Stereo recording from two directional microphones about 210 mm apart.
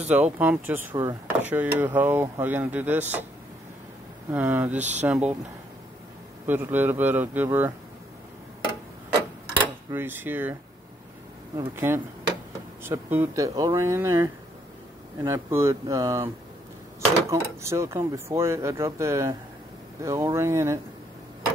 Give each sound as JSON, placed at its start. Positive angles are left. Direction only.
{"t": 0.1, "sound": "speech", "side_deg": -5}
{"t": 4.3, "sound": "speech", "side_deg": -10}
{"t": 4.7, "sound": "speech", "side_deg": -35}
{"t": 5.0, "sound": "speech", "side_deg": -5}
{"t": 6.4, "sound": "speech", "side_deg": -10}
{"t": 9.8, "sound": "speech", "side_deg": -10}
{"t": 11.5, "sound": "speech", "side_deg": -10}
{"t": 17.3, "sound": "speech", "side_deg": -15}